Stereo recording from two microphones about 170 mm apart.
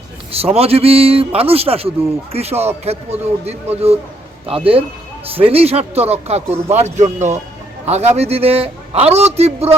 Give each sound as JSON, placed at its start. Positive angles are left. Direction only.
{"t": 0.3, "sound": "speech", "side_deg": -35}